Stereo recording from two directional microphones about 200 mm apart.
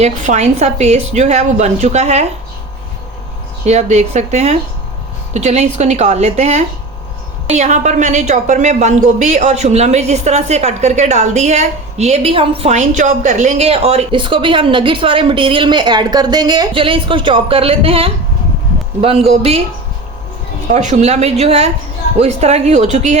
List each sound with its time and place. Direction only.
0.0 s a woman's voice: 35° right (ahead or behind)
3.7 s a woman's voice: 35° right (ahead or behind)
20.7 s a woman's voice: 35° right (ahead or behind)